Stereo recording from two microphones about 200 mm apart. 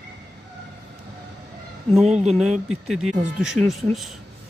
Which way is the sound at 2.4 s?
Centre (ahead or behind).